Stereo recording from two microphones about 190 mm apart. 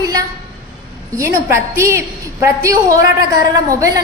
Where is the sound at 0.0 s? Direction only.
20° right (ahead or behind).